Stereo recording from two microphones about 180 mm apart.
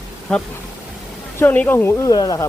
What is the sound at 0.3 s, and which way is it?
A man's voice, 5° left (ahead or behind).